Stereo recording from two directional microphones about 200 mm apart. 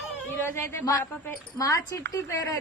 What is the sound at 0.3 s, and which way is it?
A woman's voice, 10° left (ahead or behind).